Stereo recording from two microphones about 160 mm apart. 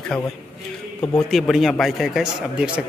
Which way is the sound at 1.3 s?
Centre (ahead or behind).